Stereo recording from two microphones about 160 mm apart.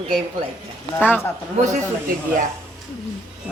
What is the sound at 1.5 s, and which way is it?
Speech, 50° right (ahead or behind).